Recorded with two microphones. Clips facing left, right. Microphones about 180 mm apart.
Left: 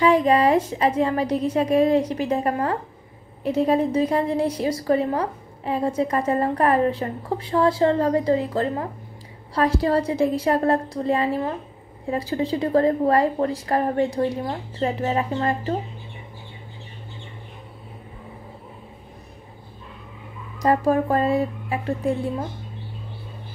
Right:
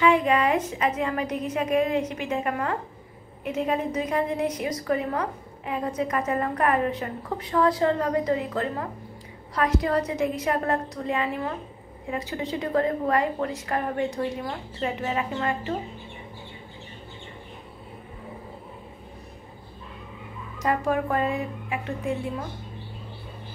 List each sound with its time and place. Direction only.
0.0 s a woman's voice: 35° left (ahead or behind)
20.6 s a woman's voice: 35° left (ahead or behind)